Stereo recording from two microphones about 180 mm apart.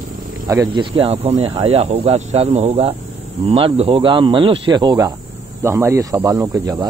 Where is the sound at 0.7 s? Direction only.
30° right (ahead or behind).